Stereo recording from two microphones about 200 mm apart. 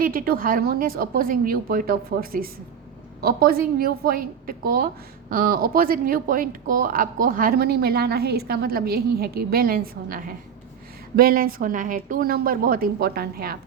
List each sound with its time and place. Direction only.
0.0 s a woman's voice: 45° right (ahead or behind)